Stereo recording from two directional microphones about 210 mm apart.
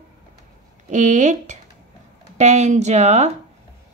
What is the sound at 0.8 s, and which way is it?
A woman's voice, 35° right (ahead or behind).